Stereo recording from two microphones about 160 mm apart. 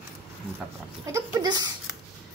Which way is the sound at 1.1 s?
25° right (ahead or behind).